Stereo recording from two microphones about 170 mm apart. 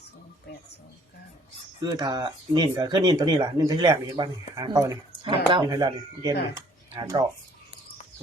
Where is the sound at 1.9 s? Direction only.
25° right (ahead or behind).